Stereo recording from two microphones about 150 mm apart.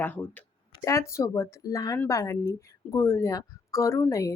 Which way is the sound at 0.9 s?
20° left (ahead or behind).